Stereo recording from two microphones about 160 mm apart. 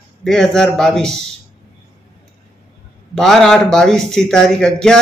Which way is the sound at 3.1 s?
Centre (ahead or behind).